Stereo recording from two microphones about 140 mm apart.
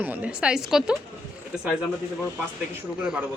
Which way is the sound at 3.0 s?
5° right (ahead or behind).